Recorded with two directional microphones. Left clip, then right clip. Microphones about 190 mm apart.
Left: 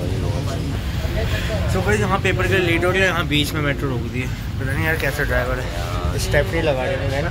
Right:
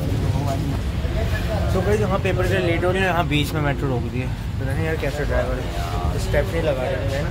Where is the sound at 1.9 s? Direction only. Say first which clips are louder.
Left 3 dB; 10° right (ahead or behind).